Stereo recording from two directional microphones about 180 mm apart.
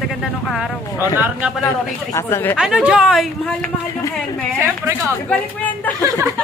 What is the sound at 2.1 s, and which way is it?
Speech, 15° left (ahead or behind).